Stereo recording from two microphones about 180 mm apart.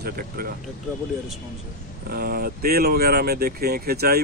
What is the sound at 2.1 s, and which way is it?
Speech, 60° right (ahead or behind).